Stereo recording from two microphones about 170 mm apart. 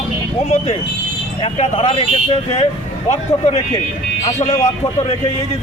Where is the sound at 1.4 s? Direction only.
40° left (ahead or behind).